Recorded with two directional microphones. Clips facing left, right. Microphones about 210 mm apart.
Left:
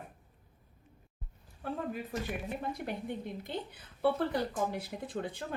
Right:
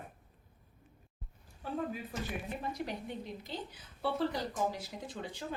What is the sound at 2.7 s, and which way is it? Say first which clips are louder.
A woman's voice: left 2 dB; 55° left (ahead or behind).